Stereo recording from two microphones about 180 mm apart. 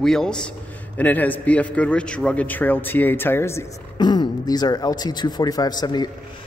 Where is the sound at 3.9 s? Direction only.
25° left (ahead or behind).